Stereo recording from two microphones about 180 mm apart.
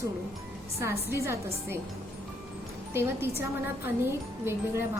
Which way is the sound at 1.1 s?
15° right (ahead or behind).